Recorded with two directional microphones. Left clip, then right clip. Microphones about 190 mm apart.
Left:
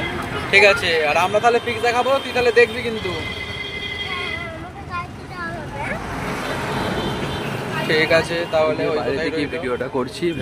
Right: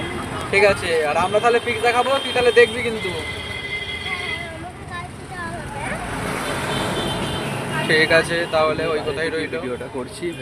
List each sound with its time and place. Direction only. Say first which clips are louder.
0.5 s speech: left 3 dB; 5° right (ahead or behind)
7.9 s speech: right 1 dB; 5° right (ahead or behind)
9.6 s speech: left 5 dB; 25° left (ahead or behind)